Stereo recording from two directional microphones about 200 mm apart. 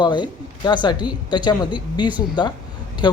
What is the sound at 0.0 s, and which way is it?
A woman's voice, 25° left (ahead or behind).